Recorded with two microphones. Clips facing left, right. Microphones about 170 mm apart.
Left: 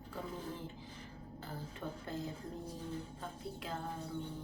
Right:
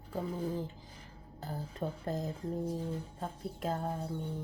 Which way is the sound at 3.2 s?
45° right (ahead or behind).